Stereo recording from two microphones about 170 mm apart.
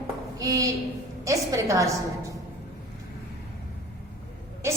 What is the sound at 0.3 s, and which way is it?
A woman's voice, 20° right (ahead or behind).